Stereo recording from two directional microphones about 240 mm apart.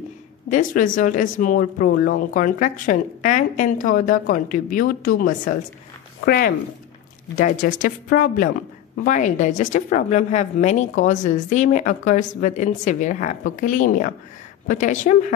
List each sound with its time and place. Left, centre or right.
0.5 s speech: left